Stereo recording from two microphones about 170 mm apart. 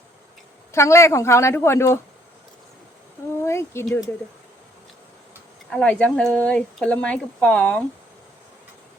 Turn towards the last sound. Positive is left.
turn(degrees=5)  # may be behind; listen again after turning